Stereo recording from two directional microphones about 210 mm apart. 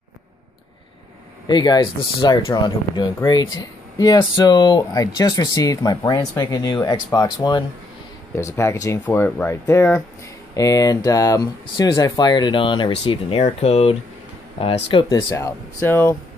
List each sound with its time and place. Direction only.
1.5 s speech: 20° left (ahead or behind)